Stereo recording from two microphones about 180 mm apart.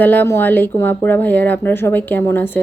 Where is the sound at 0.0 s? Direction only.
10° left (ahead or behind).